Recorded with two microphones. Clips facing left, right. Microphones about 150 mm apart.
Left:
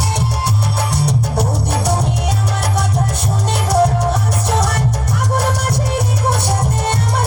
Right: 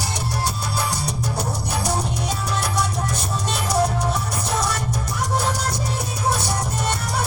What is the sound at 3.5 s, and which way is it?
Music, 65° left (ahead or behind).